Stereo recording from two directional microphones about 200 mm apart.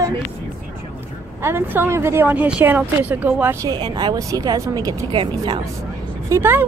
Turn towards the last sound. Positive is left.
turn(degrees=-10)  # may be behind; listen again after turning